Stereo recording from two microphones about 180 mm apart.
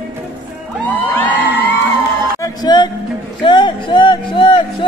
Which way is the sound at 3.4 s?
25° left (ahead or behind).